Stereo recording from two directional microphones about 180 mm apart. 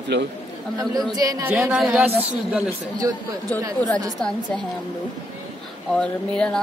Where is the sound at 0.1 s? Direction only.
70° right (ahead or behind).